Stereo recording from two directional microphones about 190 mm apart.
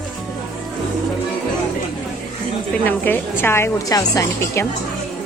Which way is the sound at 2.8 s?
10° left (ahead or behind).